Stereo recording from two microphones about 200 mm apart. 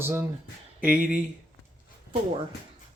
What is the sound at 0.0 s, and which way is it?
Speech, 10° right (ahead or behind).